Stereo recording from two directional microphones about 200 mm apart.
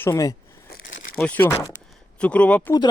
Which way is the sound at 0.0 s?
15° left (ahead or behind).